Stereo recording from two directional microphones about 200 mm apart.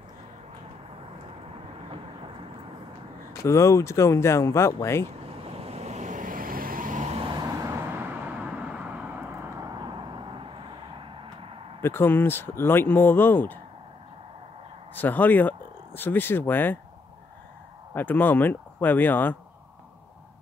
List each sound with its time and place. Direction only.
3.4 s speech: 15° left (ahead or behind)
5.4 s vehicle: 30° right (ahead or behind)
11.8 s speech: 10° left (ahead or behind)
15.0 s speech: 10° left (ahead or behind)
17.9 s speech: 10° left (ahead or behind)